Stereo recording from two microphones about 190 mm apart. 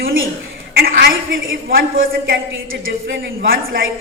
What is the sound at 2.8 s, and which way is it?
A woman's voice, 70° right (ahead or behind).